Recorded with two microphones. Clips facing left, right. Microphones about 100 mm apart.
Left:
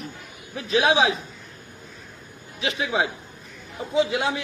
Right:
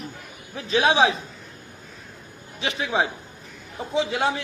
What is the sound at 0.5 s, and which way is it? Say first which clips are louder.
Speech: even; 35° right (ahead or behind).